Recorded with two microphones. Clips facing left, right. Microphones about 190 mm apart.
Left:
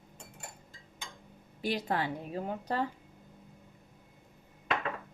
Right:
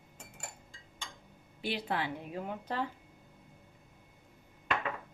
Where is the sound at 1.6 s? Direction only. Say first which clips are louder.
Left 3 dB; 40° left (ahead or behind).